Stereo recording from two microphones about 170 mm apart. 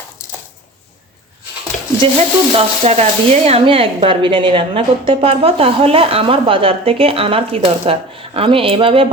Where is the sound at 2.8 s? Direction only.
40° right (ahead or behind).